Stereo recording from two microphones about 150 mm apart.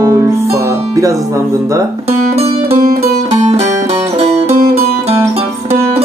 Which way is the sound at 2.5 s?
40° right (ahead or behind).